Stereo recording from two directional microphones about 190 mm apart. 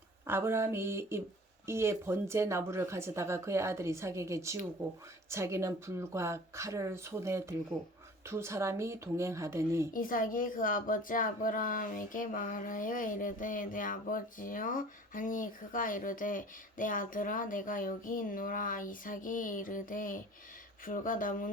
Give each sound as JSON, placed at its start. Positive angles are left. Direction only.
{"t": 0.3, "sound": "speech", "side_deg": -10}
{"t": 9.9, "sound": "a woman's voice", "side_deg": 45}